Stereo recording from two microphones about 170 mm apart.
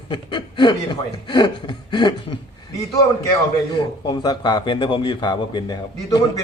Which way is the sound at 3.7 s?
25° left (ahead or behind).